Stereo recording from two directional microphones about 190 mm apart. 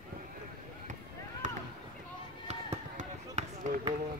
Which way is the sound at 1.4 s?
40° right (ahead or behind).